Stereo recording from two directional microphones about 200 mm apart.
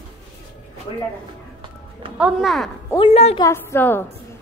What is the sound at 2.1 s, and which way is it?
Speech, 5° right (ahead or behind).